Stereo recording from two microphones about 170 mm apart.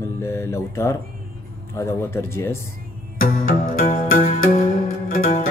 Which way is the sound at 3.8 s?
50° left (ahead or behind).